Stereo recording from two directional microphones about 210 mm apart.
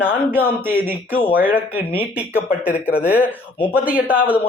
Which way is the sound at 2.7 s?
10° left (ahead or behind).